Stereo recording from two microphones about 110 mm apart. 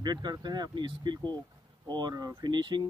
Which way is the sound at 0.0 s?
40° right (ahead or behind).